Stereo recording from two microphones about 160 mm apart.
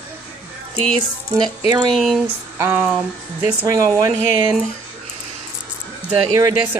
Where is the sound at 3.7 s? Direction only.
20° right (ahead or behind).